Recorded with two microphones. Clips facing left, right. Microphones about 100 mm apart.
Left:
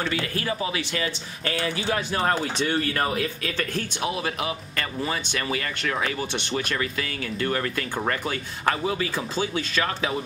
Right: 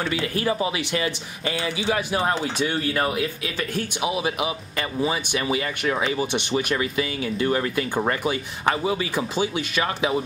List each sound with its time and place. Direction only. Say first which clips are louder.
0.0 s speech: right 3 dB; 25° right (ahead or behind)